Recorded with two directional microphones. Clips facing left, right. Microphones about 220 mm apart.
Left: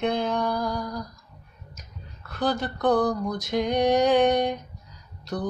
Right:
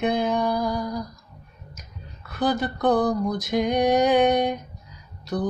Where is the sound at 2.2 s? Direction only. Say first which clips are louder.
Right 2 dB; 5° right (ahead or behind).